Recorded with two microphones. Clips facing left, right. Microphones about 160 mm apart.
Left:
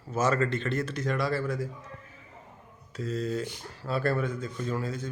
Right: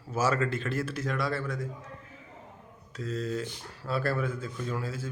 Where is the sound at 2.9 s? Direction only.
Centre (ahead or behind).